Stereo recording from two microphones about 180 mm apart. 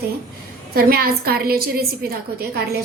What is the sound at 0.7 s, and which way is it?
A woman's voice, 55° right (ahead or behind).